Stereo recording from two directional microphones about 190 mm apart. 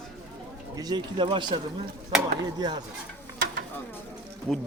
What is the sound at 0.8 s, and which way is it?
Speech, 20° right (ahead or behind).